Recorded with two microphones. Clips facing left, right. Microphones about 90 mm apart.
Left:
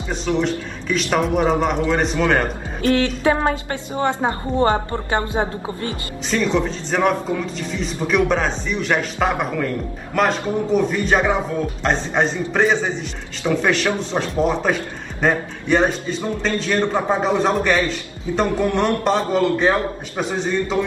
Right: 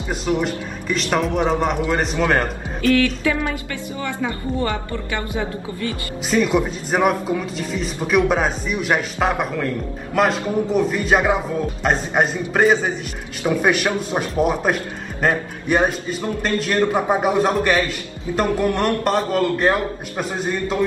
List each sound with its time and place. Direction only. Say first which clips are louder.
0.4 s a man's voice: left 2 dB; 5° right (ahead or behind)
2.4 s speech: even; 35° left (ahead or behind)
3.3 s music: left 4 dB; 35° left (ahead or behind)
4.0 s a woman's voice: left 5 dB; 30° left (ahead or behind)
6.3 s a man's voice: right 1 dB; 10° right (ahead or behind)